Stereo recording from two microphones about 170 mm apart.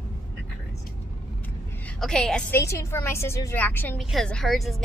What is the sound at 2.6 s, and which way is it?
A woman's voice, 15° left (ahead or behind).